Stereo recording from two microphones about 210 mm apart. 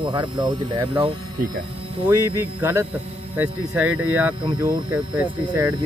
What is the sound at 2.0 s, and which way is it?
A man's voice, 10° right (ahead or behind).